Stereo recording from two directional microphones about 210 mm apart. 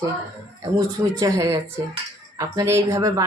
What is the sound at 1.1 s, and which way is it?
Speech, 15° right (ahead or behind).